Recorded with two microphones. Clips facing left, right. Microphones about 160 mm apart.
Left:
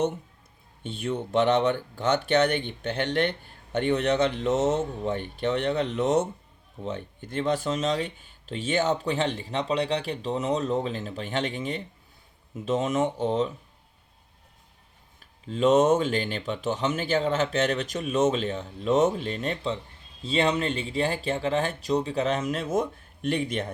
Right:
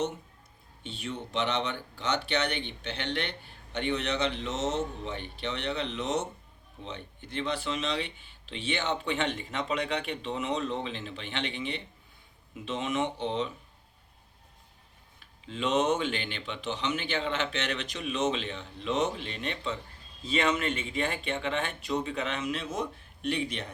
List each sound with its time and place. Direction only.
0.9 s speech: 50° left (ahead or behind)
15.2 s speech: 40° left (ahead or behind)